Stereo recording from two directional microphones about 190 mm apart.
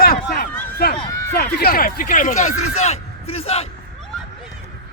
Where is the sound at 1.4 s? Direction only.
55° left (ahead or behind); by 3.7 s 30° left (ahead or behind).